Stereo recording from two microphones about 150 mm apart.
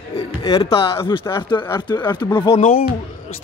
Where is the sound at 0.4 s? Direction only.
25° left (ahead or behind).